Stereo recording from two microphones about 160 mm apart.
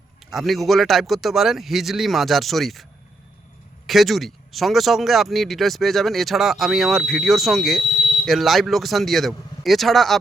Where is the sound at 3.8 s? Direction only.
Centre (ahead or behind).